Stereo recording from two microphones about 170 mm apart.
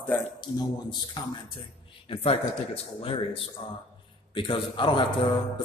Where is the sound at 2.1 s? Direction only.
35° left (ahead or behind).